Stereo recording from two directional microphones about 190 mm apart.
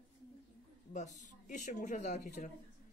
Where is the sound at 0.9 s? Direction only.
40° left (ahead or behind).